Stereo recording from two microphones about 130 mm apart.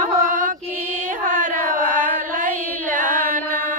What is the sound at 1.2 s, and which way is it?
Child singing, 85° right.